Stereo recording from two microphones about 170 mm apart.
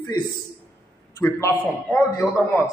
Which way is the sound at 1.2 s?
15° left (ahead or behind).